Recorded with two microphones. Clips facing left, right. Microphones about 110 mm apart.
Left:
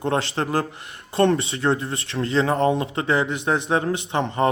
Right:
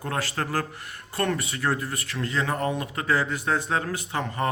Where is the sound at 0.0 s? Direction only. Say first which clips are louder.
Left 6 dB; 25° left (ahead or behind).